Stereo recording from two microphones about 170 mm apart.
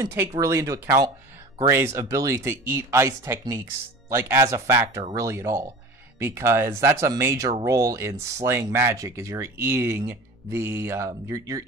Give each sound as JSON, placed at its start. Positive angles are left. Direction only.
{"t": 0.4, "sound": "speech", "side_deg": -20}